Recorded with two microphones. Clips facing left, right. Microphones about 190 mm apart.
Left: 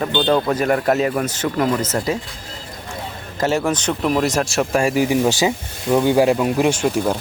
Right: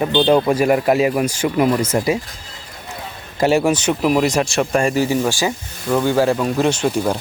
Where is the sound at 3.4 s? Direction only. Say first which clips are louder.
Right 4 dB; 10° right (ahead or behind); by 6.9 s 10° left (ahead or behind).